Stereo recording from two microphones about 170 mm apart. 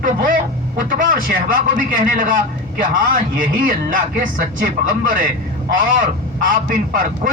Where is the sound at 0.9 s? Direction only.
50° right (ahead or behind).